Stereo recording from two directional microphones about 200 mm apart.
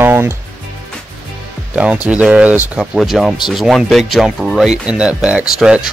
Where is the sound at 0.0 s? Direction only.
10° right (ahead or behind).